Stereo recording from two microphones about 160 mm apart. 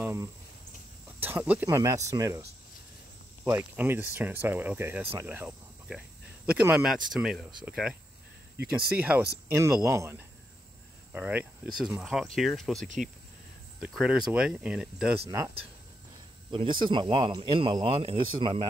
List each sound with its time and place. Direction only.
0.0 s a sound: 15° right (ahead or behind)
1.2 s speech: 10° right (ahead or behind)
3.4 s speech: 15° right (ahead or behind)
8.9 s speech: 10° right (ahead or behind)
15.2 s speech: 20° right (ahead or behind)
16.5 s speech: 30° right (ahead or behind)